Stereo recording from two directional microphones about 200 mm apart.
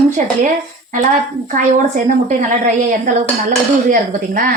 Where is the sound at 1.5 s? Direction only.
40° right (ahead or behind).